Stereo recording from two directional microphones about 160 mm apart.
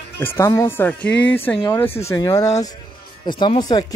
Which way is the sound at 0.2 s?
15° left (ahead or behind).